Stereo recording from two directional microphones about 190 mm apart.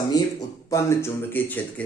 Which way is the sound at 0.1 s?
20° left (ahead or behind).